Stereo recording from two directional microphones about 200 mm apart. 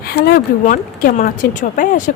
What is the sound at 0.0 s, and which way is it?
Speech, 50° left (ahead or behind).